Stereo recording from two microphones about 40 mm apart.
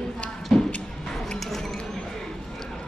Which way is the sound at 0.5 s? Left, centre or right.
Left.